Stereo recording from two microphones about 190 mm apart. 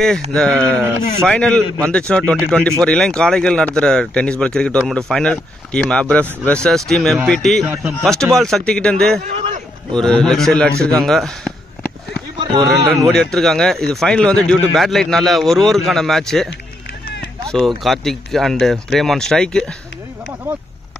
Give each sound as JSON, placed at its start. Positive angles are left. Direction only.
{"t": 0.5, "sound": "speech", "side_deg": -15}
{"t": 1.2, "sound": "speech", "side_deg": 5}
{"t": 7.6, "sound": "speech", "side_deg": -10}
{"t": 8.0, "sound": "speech", "side_deg": 0}
{"t": 9.3, "sound": "a sound", "side_deg": -30}
{"t": 9.9, "sound": "speech", "side_deg": 5}
{"t": 12.4, "sound": "speech", "side_deg": -20}
{"t": 13.1, "sound": "speech", "side_deg": 0}
{"t": 17.5, "sound": "speech", "side_deg": 0}